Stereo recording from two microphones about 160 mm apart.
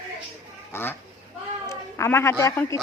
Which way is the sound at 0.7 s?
15° left (ahead or behind).